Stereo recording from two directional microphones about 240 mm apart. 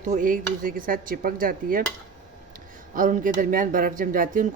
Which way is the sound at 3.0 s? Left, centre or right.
Right.